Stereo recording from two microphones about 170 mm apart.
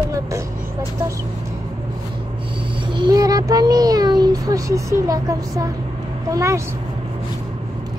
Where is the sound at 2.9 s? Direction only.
25° right (ahead or behind).